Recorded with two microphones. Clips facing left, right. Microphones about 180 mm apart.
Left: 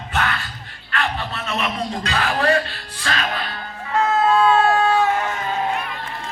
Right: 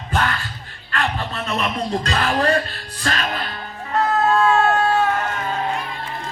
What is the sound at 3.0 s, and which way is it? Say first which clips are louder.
Music: right 1 dB; 40° right (ahead or behind).